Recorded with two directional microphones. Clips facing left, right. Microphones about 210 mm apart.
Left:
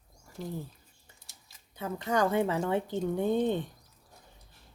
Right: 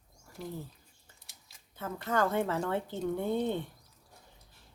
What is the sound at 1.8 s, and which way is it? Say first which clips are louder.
Speech: left 2 dB; 15° left (ahead or behind).